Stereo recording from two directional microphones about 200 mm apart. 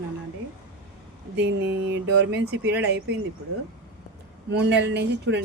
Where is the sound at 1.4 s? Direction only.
60° right (ahead or behind).